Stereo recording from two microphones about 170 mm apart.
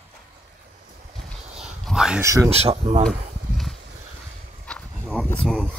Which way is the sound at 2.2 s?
15° right (ahead or behind).